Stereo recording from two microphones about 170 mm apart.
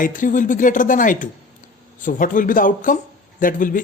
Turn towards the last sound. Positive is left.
turn(degrees=50)  # may be behind; listen again after turning